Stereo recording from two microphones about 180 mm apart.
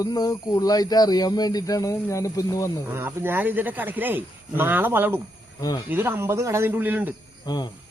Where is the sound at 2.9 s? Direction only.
10° right (ahead or behind).